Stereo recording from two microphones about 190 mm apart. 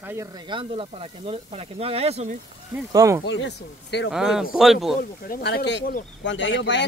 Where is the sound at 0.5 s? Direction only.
30° right (ahead or behind).